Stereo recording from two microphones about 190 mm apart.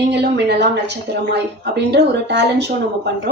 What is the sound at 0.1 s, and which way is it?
A woman's voice, 65° right (ahead or behind).